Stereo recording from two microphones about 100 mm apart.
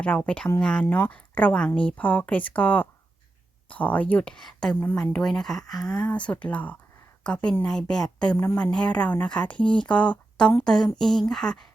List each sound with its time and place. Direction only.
0.0 s speech: 15° left (ahead or behind)